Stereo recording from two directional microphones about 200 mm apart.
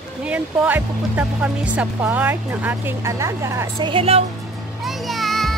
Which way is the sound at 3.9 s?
30° right (ahead or behind).